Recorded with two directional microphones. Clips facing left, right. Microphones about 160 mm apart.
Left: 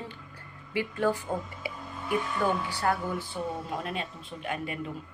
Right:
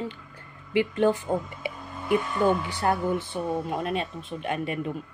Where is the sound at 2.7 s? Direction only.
20° right (ahead or behind).